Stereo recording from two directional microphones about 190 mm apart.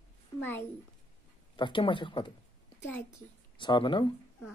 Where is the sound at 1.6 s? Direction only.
25° left (ahead or behind).